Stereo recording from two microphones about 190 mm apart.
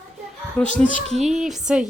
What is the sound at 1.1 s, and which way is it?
Speech, centre (ahead or behind).